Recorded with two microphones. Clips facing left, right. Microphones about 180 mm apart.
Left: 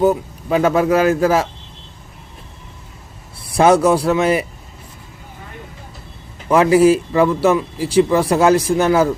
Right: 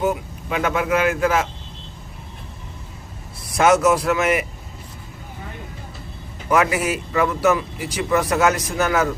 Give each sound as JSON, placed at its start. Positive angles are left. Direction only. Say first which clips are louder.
{"t": 0.0, "sound": "a man's voice", "louder": "left 7 dB", "side_deg": 35}
{"t": 3.4, "sound": "a man's voice", "louder": "left 4 dB", "side_deg": 30}
{"t": 6.5, "sound": "speech", "louder": "left 8 dB", "side_deg": 30}